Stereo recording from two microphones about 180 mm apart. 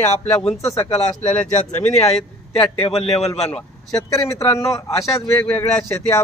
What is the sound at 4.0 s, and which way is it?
A man's voice, 20° left (ahead or behind).